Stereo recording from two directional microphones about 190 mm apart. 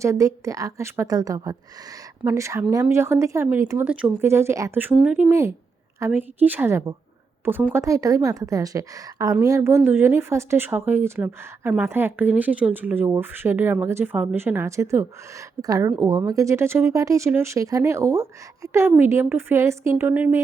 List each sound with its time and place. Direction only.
0.0 s a woman's voice: 15° right (ahead or behind)